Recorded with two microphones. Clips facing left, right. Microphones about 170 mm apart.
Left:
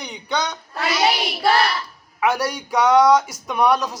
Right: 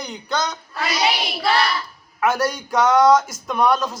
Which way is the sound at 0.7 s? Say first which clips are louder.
Left 3 dB; 50° left (ahead or behind).